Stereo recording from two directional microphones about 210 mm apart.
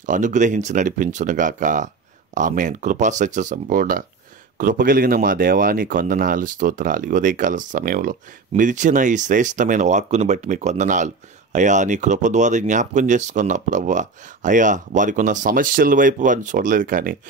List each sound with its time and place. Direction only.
0.0 s speech: 35° right (ahead or behind)